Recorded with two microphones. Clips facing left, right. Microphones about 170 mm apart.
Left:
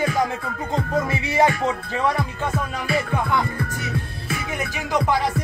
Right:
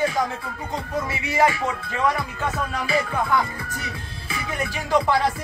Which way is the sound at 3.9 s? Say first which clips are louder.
Left 6 dB; 50° left (ahead or behind).